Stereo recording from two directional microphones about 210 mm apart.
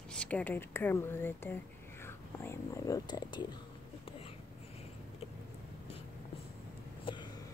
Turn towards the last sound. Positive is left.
turn(degrees=25)  # may be behind; listen again after turning